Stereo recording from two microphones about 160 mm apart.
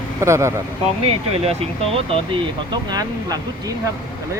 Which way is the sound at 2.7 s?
25° right (ahead or behind).